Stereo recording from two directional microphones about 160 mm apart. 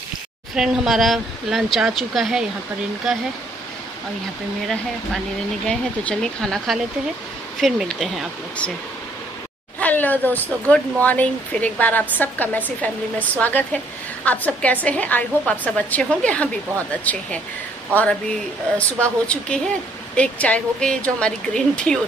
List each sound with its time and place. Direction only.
0.6 s speech: centre (ahead or behind)
5.7 s speech: 5° left (ahead or behind)
9.8 s speech: 10° left (ahead or behind)
18.8 s speech: 5° left (ahead or behind)